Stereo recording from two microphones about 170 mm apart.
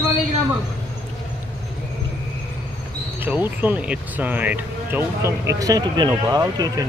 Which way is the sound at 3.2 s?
10° right (ahead or behind).